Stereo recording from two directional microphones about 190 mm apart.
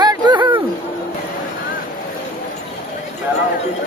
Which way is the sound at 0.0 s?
20° right (ahead or behind).